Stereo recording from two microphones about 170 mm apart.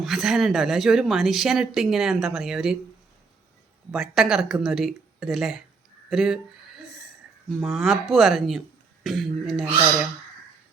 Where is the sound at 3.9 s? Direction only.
Centre (ahead or behind).